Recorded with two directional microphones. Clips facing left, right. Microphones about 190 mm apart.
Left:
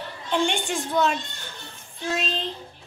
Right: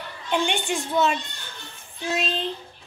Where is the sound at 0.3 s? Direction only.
5° right (ahead or behind).